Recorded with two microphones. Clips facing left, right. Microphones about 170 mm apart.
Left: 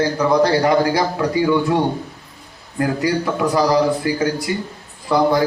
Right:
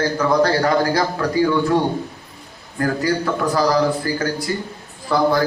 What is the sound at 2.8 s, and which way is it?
A man's voice, 15° left (ahead or behind).